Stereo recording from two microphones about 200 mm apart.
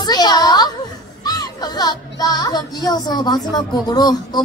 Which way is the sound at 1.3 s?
20° left (ahead or behind).